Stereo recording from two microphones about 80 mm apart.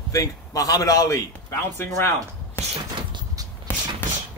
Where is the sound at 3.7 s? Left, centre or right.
Left.